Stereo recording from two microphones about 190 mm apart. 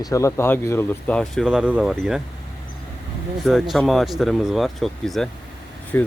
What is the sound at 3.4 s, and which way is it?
Speech, centre (ahead or behind).